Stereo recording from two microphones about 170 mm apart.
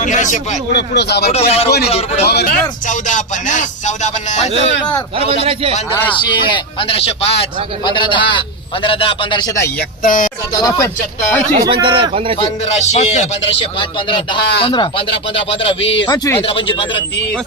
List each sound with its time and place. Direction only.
0.0 s speech: 45° left (ahead or behind)
0.7 s speech: 75° left (ahead or behind)
1.3 s a man's voice: 40° left (ahead or behind)
2.2 s speech: 70° left (ahead or behind)
2.9 s speech: 50° left (ahead or behind)
5.4 s a man's voice: 35° right (ahead or behind)
5.9 s a man's voice: 10° left (ahead or behind)
6.1 s a man's voice: 25° left (ahead or behind)
10.0 s speech: 55° left (ahead or behind)
10.6 s a man's voice: 20° left (ahead or behind)
11.6 s speech: 30° right (ahead or behind)
12.6 s a man's voice: 40° left (ahead or behind)